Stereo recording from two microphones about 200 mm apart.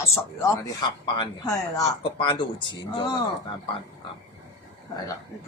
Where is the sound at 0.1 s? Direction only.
15° left (ahead or behind).